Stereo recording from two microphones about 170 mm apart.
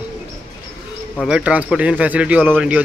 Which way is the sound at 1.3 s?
5° right (ahead or behind).